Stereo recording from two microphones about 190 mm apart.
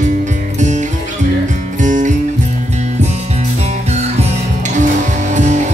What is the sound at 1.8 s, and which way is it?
Music, 45° right (ahead or behind).